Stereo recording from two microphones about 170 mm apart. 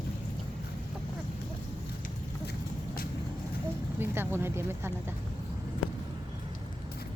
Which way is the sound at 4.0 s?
15° right (ahead or behind).